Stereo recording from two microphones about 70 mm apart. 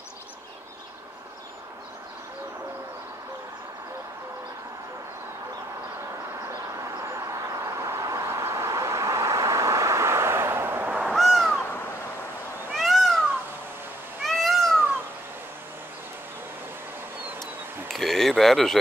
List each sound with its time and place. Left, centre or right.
6.4 s vehicle: right
11.1 s owl: centre
12.7 s cat: centre
14.2 s cat: centre
17.8 s a sound: centre